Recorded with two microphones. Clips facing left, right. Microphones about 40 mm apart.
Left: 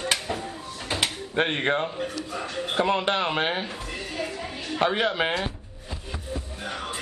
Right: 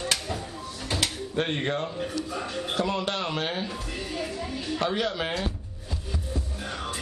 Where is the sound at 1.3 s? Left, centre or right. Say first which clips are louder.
Left 5 dB; left.